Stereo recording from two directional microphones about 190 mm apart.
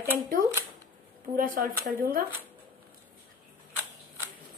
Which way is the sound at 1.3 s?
45° right (ahead or behind).